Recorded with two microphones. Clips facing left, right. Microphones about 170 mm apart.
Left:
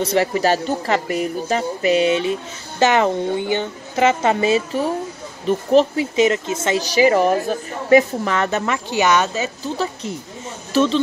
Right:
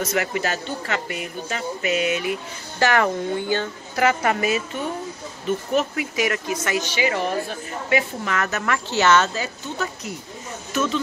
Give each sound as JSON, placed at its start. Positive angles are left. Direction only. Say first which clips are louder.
{"t": 0.0, "sound": "a woman's voice", "louder": "left 6 dB", "side_deg": 35}
{"t": 6.9, "sound": "a woman's voice", "louder": "left 12 dB", "side_deg": 40}
{"t": 10.7, "sound": "speech", "louder": "left 7 dB", "side_deg": 30}